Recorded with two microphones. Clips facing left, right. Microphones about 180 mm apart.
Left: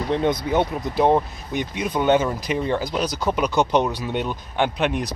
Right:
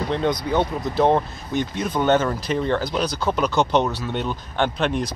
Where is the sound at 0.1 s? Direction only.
25° left (ahead or behind).